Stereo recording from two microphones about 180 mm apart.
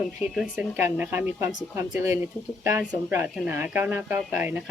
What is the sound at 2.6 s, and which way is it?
Speech, 15° right (ahead or behind).